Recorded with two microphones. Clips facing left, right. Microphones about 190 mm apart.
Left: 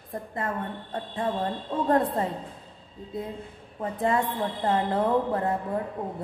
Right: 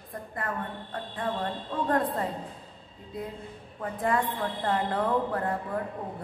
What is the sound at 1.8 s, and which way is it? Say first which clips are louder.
Speech: left 4 dB; 25° left (ahead or behind).